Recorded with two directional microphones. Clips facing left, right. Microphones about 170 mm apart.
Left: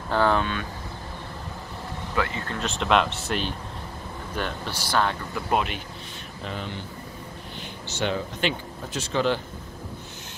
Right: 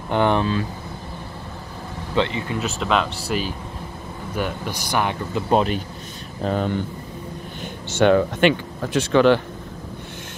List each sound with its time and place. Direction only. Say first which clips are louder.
0.1 s speech: right 3 dB; 20° right (ahead or behind)
2.1 s speech: right 6 dB; 25° right (ahead or behind)
2.4 s speech: right 3 dB; 10° right (ahead or behind)
5.5 s a man's voice: right 6 dB; 35° right (ahead or behind)
6.4 s speech: right 12 dB; 45° right (ahead or behind)
7.6 s speech: right 11 dB; 60° right (ahead or behind)